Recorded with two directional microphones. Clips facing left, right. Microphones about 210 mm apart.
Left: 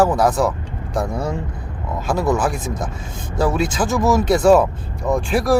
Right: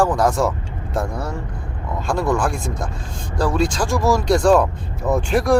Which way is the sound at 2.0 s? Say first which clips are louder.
Left 1 dB; 5° left (ahead or behind).